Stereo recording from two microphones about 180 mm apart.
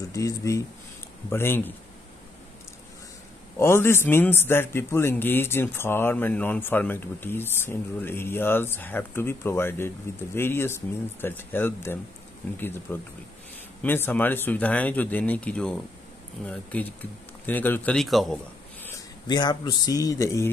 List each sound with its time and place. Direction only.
0.1 s a man's voice: 15° left (ahead or behind)
3.5 s a man's voice: 15° left (ahead or behind)
19.2 s speech: 25° left (ahead or behind)